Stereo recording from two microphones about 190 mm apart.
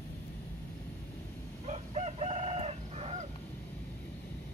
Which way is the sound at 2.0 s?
35° right (ahead or behind).